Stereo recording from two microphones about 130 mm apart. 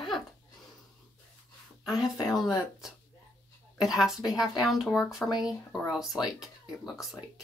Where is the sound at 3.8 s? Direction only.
Centre (ahead or behind).